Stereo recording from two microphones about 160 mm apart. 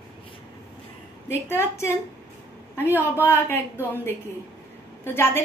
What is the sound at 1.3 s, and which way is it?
Speech, 15° left (ahead or behind).